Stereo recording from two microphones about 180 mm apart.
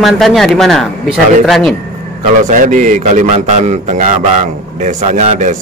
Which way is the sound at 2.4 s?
45° right (ahead or behind).